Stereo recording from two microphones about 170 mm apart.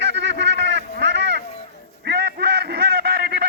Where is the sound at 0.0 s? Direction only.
90° right.